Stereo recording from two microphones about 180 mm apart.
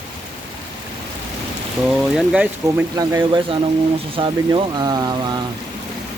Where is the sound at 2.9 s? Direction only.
20° right (ahead or behind).